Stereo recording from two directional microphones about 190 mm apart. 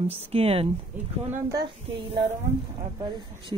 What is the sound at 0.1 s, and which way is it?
Speech, 30° right (ahead or behind).